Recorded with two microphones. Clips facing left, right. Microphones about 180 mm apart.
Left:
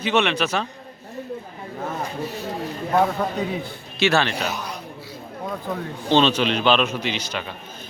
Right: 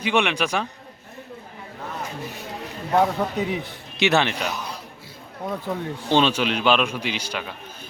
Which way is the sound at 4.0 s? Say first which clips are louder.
Even; 20° right (ahead or behind).